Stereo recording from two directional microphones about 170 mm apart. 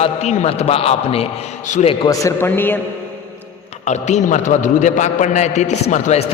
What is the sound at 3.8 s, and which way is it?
A man's voice, 45° left (ahead or behind).